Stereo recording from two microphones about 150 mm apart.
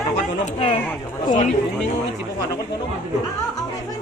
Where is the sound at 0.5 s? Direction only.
40° left (ahead or behind).